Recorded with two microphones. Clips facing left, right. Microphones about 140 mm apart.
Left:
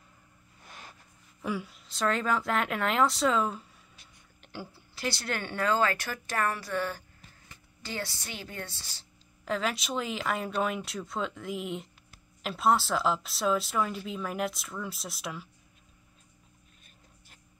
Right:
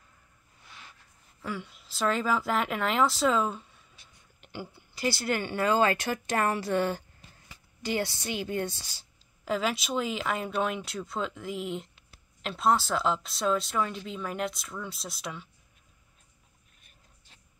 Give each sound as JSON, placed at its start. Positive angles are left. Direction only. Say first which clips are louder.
{"t": 1.4, "sound": "a woman's voice", "louder": "left 3 dB", "side_deg": 10}
{"t": 1.7, "sound": "speech", "louder": "right 3 dB", "side_deg": 0}
{"t": 5.8, "sound": "speech", "louder": "right 3 dB", "side_deg": -20}
{"t": 9.4, "sound": "speech", "louder": "right 2 dB", "side_deg": 0}